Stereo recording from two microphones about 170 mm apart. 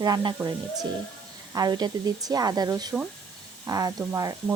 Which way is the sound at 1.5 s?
25° right (ahead or behind).